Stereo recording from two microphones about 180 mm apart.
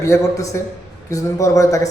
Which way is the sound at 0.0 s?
15° left (ahead or behind).